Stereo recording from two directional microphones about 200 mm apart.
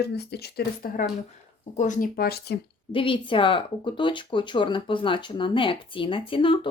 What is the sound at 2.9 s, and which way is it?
Speech, 25° left (ahead or behind).